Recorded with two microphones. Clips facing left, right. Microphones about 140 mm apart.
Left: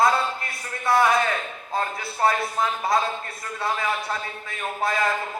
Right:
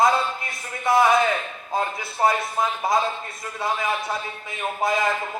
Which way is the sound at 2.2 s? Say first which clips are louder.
Right 1 dB; 20° right (ahead or behind).